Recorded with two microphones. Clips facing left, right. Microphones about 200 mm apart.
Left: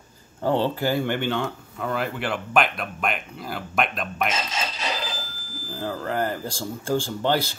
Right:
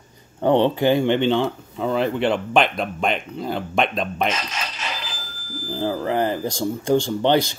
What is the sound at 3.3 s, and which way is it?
Speech, 25° right (ahead or behind).